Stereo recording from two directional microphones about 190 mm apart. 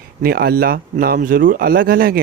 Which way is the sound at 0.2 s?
55° right (ahead or behind).